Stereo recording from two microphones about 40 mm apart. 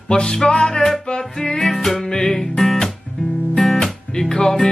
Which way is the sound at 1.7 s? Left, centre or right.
Centre.